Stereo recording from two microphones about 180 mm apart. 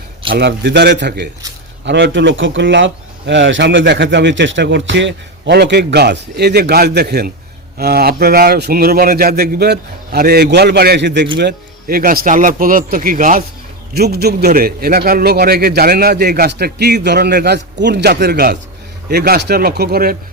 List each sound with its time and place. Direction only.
0.3 s a man's voice: 70° right (ahead or behind); by 13.4 s 50° right (ahead or behind)
13.9 s a man's voice: 60° right (ahead or behind)